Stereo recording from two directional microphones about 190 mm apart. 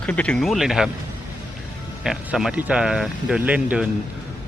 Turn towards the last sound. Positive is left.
turn(degrees=-5)  # may be behind; listen again after turning